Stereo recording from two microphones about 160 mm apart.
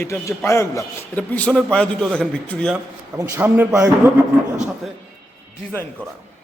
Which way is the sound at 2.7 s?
15° right (ahead or behind).